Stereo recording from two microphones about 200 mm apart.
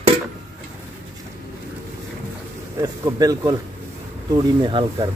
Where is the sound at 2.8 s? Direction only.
20° right (ahead or behind).